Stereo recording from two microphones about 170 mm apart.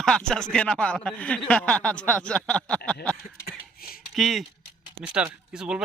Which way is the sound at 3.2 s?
60° left (ahead or behind).